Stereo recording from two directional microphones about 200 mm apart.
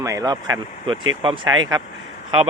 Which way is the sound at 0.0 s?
15° right (ahead or behind).